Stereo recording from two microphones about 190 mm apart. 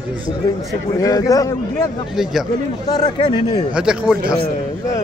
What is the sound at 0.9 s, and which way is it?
Speech, 20° left (ahead or behind).